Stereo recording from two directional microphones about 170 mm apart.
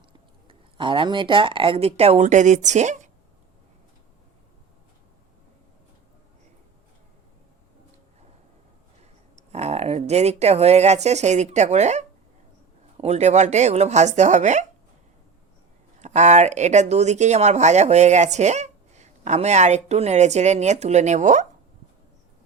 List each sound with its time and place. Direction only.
0.4 s speech: 30° right (ahead or behind); by 3.1 s 45° right (ahead or behind)
9.3 s speech: 40° right (ahead or behind)
16.0 s speech: 45° right (ahead or behind)